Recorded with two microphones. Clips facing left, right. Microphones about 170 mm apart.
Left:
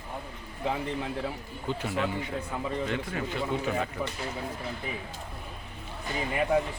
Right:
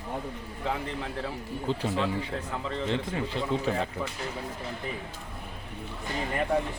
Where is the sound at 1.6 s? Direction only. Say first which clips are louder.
Right 1 dB; 30° right (ahead or behind).